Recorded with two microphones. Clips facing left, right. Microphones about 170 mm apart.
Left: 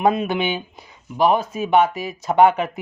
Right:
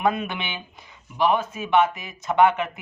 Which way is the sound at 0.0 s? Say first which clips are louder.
Left 6 dB; 35° left (ahead or behind).